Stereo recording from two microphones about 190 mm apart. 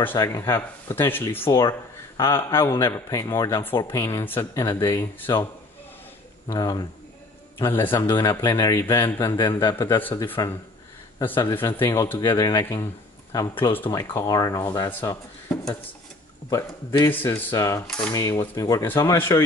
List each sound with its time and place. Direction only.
0.0 s a man's voice: 15° left (ahead or behind)
6.5 s a man's voice: 20° left (ahead or behind)
17.0 s a man's voice: 10° left (ahead or behind)